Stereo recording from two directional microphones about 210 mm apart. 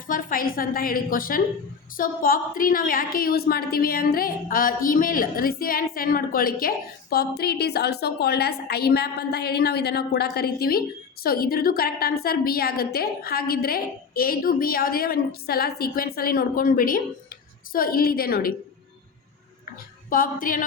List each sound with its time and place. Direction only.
0.1 s a woman's voice: 40° left (ahead or behind)
20.1 s music: 40° left (ahead or behind)